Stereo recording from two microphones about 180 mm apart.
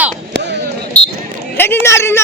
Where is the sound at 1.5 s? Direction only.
10° left (ahead or behind).